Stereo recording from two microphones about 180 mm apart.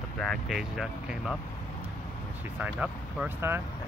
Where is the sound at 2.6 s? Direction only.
10° right (ahead or behind).